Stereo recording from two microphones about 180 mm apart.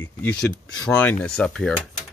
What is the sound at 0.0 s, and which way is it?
Speech, 10° left (ahead or behind).